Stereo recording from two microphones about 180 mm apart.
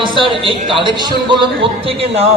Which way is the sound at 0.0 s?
30° right (ahead or behind).